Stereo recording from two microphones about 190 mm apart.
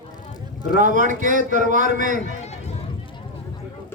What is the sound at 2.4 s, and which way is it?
Run, 35° left (ahead or behind).